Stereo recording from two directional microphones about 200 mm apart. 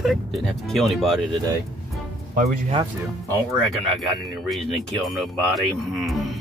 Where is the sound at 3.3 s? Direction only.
Centre (ahead or behind).